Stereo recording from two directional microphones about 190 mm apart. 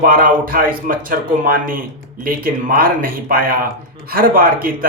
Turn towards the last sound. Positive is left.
turn(degrees=-50)  # may be behind; listen again after turning